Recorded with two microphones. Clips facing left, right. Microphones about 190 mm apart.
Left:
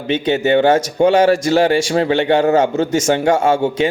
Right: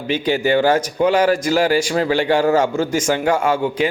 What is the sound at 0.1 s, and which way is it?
A man's voice, 25° left (ahead or behind).